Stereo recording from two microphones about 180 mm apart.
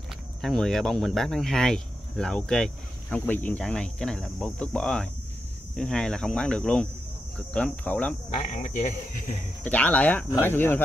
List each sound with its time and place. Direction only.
0.4 s speech: centre (ahead or behind)
8.3 s speech: 40° left (ahead or behind)
9.7 s speech: 10° left (ahead or behind)